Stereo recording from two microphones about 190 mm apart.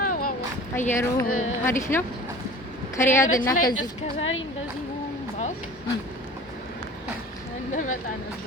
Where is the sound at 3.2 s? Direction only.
45° left (ahead or behind).